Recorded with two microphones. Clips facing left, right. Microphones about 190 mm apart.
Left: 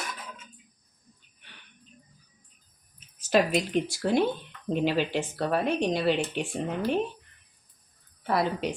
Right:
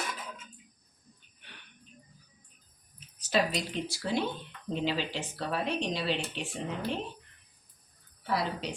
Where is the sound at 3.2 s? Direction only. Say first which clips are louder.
Left 6 dB; 50° left (ahead or behind).